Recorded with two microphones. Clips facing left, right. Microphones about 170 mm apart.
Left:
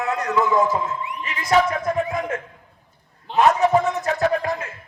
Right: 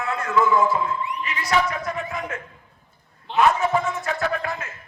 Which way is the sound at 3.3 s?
40° left (ahead or behind).